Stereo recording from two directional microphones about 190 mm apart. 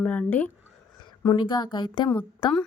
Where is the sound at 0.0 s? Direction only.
10° left (ahead or behind).